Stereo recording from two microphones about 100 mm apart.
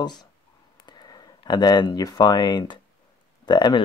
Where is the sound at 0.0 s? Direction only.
45° left (ahead or behind).